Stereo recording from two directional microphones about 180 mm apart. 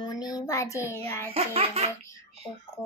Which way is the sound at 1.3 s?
35° right (ahead or behind).